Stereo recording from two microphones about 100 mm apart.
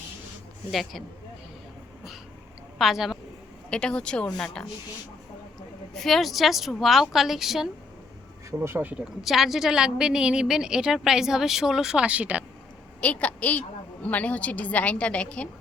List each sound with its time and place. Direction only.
0.7 s a woman's voice: centre (ahead or behind)
2.7 s a woman's voice: centre (ahead or behind)
3.7 s a woman's voice: 10° left (ahead or behind)
5.9 s a woman's voice: centre (ahead or behind)
8.4 s speech: 25° right (ahead or behind)
9.2 s a woman's voice: centre (ahead or behind)
13.0 s a woman's voice: 15° left (ahead or behind)